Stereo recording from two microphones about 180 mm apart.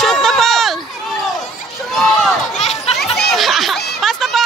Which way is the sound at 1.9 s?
Centre (ahead or behind).